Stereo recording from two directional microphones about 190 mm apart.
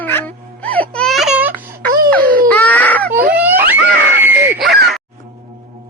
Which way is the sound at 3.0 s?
50° right (ahead or behind).